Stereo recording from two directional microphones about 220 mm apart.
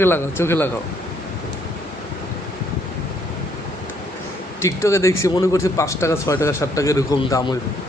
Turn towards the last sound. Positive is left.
turn(degrees=15)  # may be behind; listen again after turning